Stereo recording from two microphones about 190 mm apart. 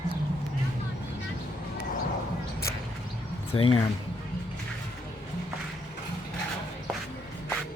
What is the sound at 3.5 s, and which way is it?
Speech, 30° left (ahead or behind).